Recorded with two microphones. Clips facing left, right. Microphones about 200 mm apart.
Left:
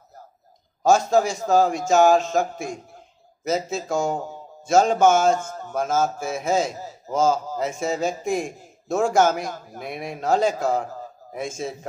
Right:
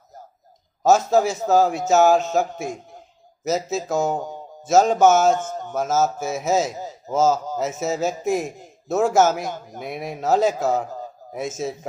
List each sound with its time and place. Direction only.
0.8 s speech: 5° right (ahead or behind)
5.4 s a man's voice: 20° right (ahead or behind)
5.8 s speech: 5° right (ahead or behind)